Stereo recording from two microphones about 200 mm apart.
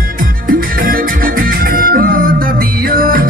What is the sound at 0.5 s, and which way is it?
Music, 45° right (ahead or behind).